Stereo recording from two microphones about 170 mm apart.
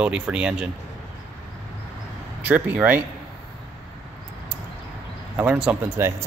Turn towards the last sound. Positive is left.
turn(degrees=-10)  # may be behind; listen again after turning